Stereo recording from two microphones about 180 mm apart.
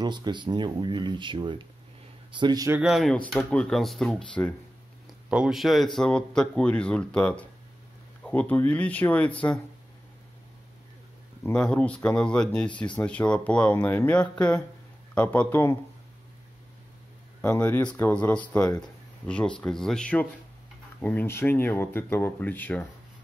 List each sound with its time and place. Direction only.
0.0 s speech: 25° right (ahead or behind)
2.8 s speech: centre (ahead or behind)
11.4 s speech: 5° left (ahead or behind)
17.4 s speech: 10° left (ahead or behind)
18.8 s a sound: 5° left (ahead or behind)
19.6 s speech: 5° left (ahead or behind)